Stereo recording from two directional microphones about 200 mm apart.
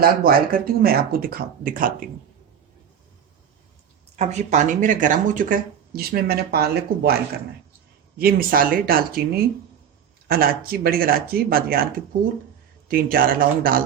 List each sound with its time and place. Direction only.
0.0 s speech: 45° right (ahead or behind)
4.2 s speech: 35° right (ahead or behind); by 7.2 s 50° right (ahead or behind)
8.2 s speech: 50° right (ahead or behind)
12.9 s speech: 45° right (ahead or behind)